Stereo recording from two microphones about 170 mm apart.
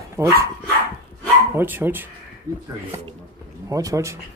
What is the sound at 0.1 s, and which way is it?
Speech, 15° right (ahead or behind).